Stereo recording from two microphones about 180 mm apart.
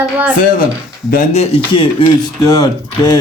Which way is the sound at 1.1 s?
45° left (ahead or behind).